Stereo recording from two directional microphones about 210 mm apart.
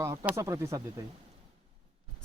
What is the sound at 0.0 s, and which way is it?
Speech, 15° right (ahead or behind).